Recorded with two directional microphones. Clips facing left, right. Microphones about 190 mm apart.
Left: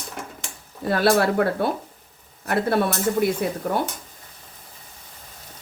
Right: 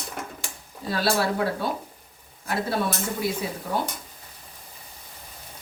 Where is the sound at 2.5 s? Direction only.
60° left (ahead or behind).